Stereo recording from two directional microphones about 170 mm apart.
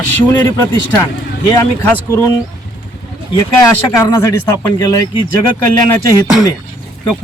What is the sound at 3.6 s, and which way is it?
A man's voice, 20° left (ahead or behind).